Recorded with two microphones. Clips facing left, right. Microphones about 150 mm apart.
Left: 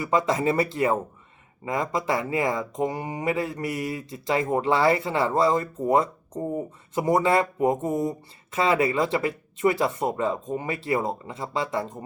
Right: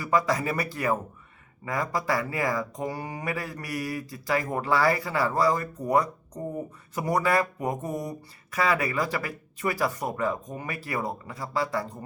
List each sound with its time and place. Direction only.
0.0 s speech: 25° left (ahead or behind)